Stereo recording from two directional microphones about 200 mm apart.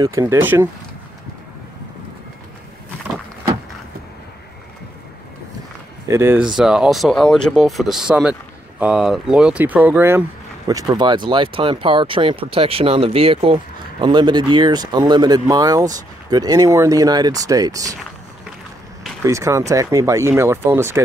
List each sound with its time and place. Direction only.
0.0 s speech: 15° right (ahead or behind)
6.0 s speech: 10° right (ahead or behind)
19.2 s speech: 15° right (ahead or behind)